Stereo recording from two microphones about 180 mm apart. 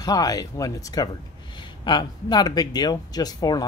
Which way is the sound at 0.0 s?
20° left (ahead or behind).